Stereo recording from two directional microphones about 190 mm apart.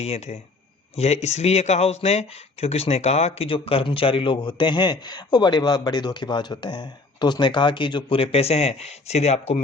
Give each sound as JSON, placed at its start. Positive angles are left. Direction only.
{"t": 0.0, "sound": "speech", "side_deg": 35}